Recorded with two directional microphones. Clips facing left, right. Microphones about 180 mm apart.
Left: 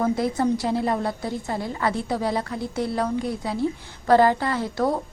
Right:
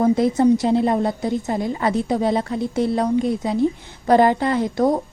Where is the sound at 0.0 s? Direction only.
20° right (ahead or behind).